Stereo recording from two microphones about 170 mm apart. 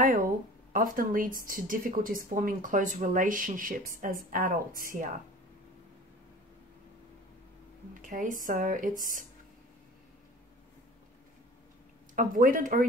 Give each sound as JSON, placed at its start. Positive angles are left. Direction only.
{"t": 0.0, "sound": "a woman's voice", "side_deg": -50}
{"t": 8.0, "sound": "a woman's voice", "side_deg": -50}
{"t": 12.2, "sound": "a woman's voice", "side_deg": -55}